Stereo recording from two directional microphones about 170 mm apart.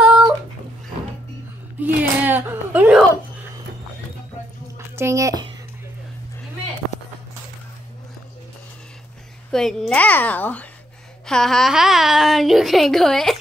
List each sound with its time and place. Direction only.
0.0 s dog: 5° right (ahead or behind)
1.8 s a sound: 10° right (ahead or behind)
4.7 s speech: 15° right (ahead or behind)
9.5 s a child's voice: 5° left (ahead or behind)